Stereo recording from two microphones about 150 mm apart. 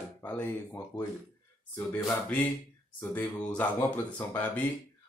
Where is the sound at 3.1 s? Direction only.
10° left (ahead or behind).